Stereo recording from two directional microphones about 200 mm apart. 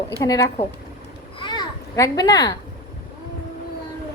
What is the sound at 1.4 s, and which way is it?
Children playing, 20° left (ahead or behind).